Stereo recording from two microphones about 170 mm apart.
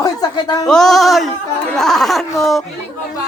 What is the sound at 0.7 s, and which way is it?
Speech, 5° left (ahead or behind).